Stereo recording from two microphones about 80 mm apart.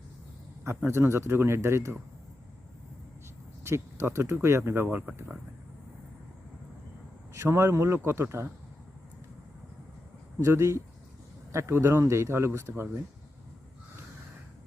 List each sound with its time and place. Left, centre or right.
0.6 s speech: right
3.6 s speech: right
7.3 s speech: right
10.4 s speech: right